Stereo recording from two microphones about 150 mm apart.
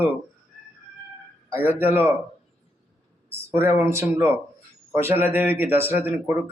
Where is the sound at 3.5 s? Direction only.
15° right (ahead or behind).